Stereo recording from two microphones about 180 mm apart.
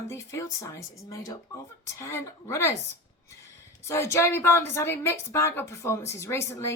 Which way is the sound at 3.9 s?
15° left (ahead or behind).